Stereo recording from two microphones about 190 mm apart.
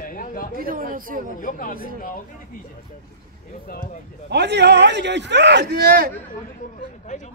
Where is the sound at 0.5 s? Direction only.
50° right (ahead or behind).